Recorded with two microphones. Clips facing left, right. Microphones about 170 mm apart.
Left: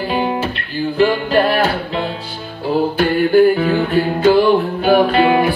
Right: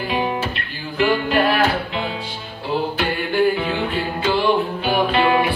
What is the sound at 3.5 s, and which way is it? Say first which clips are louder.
Music: left 7 dB; 50° left (ahead or behind).